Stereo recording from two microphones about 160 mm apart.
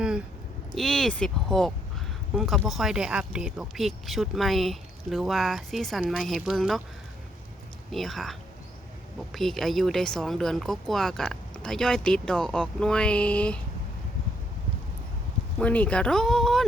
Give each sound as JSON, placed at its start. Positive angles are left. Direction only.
{"t": 0.7, "sound": "speech", "side_deg": 0}
{"t": 7.9, "sound": "speech", "side_deg": 0}
{"t": 15.5, "sound": "speech", "side_deg": 10}